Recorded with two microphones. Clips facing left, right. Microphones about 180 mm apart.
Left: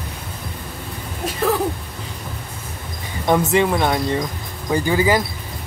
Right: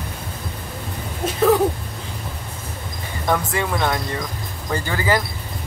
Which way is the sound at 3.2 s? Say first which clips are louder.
Left 5 dB; 20° left (ahead or behind).